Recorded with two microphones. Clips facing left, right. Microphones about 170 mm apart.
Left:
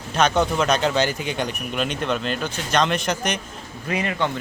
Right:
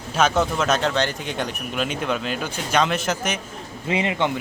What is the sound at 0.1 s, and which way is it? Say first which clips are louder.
Speech: left 1 dB; 5° right (ahead or behind).